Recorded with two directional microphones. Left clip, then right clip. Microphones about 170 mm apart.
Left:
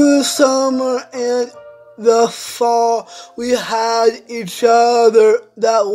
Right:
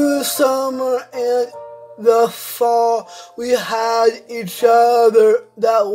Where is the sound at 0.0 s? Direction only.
20° left (ahead or behind).